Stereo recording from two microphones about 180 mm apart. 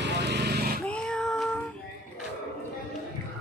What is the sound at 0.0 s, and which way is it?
Vehicle, 70° right (ahead or behind).